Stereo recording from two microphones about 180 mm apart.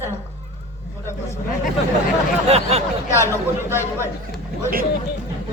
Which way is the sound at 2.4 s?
35° right (ahead or behind).